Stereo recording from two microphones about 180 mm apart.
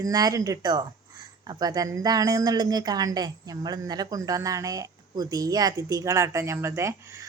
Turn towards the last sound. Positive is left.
turn(degrees=-15)  # may be behind; listen again after turning